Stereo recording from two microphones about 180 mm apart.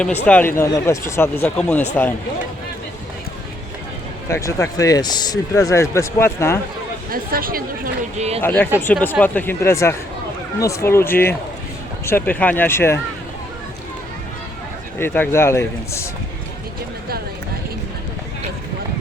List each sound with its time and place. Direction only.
0.0 s speech: 10° left (ahead or behind)
4.3 s speech: 15° left (ahead or behind)
7.1 s speech: 55° right (ahead or behind)
8.4 s speech: 10° left (ahead or behind)
14.9 s speech: 10° left (ahead or behind)